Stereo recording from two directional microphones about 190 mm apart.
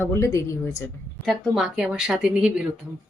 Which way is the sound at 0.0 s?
15° left (ahead or behind).